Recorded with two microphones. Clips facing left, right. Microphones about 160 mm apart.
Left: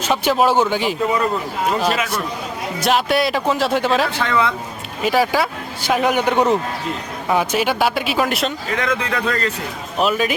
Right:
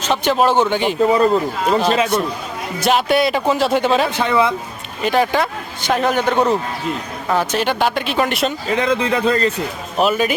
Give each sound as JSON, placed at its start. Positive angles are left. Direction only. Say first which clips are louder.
{"t": 0.0, "sound": "speech", "louder": "right 1 dB", "side_deg": 5}
{"t": 1.0, "sound": "speech", "louder": "right 5 dB", "side_deg": -30}
{"t": 2.8, "sound": "speech", "louder": "right 2 dB", "side_deg": 0}
{"t": 4.2, "sound": "speech", "louder": "right 3 dB", "side_deg": -20}
{"t": 5.0, "sound": "a man's voice", "louder": "right 1 dB", "side_deg": 5}
{"t": 8.7, "sound": "speech", "louder": "right 6 dB", "side_deg": -25}
{"t": 10.0, "sound": "speech", "louder": "right 2 dB", "side_deg": 0}